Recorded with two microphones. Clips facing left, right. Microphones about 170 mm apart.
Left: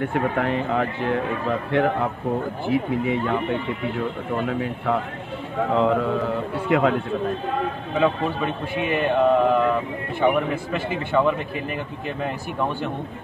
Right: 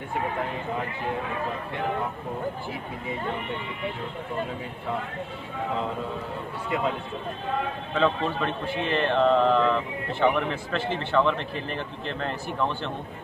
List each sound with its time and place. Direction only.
0.0 s speech: 70° left (ahead or behind)
5.8 s speech: 75° left (ahead or behind)
7.9 s a man's voice: 10° left (ahead or behind)